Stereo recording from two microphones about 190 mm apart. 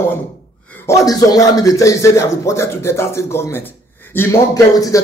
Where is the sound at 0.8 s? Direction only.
15° left (ahead or behind).